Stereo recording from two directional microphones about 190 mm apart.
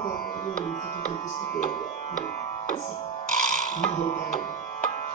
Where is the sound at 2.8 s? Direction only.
30° left (ahead or behind).